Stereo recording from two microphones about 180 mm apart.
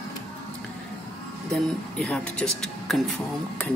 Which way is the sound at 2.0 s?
5° left (ahead or behind).